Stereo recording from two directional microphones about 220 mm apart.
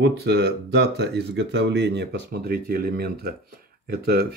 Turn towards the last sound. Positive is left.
turn(degrees=-45)  # may be behind; listen again after turning